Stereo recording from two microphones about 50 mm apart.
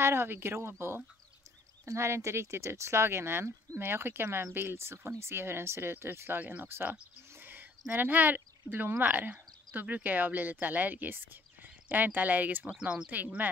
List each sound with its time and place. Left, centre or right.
0.0 s speech: right
1.9 s speech: right
6.4 s speech: right
7.4 s a sound: right
7.9 s speech: right